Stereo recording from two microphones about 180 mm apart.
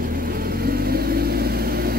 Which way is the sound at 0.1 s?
55° right (ahead or behind).